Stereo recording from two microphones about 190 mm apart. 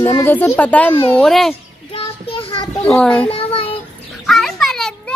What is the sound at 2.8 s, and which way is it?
Speech, 5° left (ahead or behind).